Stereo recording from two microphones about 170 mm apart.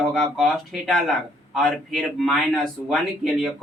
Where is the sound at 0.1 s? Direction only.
Centre (ahead or behind).